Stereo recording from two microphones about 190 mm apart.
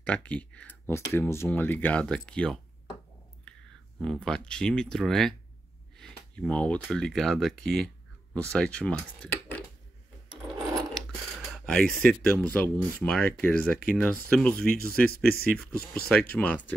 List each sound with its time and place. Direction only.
0.0 s speech: 5° left (ahead or behind)
3.5 s a sound: 5° left (ahead or behind)
4.0 s speech: 5° left (ahead or behind)
11.5 s speech: 5° left (ahead or behind)
15.0 s speech: 50° left (ahead or behind)
15.5 s speech: 5° left (ahead or behind)